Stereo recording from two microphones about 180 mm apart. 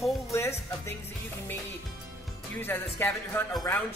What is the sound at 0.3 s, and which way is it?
Music, 15° left (ahead or behind).